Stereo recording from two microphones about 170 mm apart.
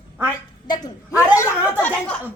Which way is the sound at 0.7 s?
20° left (ahead or behind).